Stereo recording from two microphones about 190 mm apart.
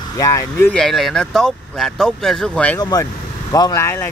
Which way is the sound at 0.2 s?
15° left (ahead or behind).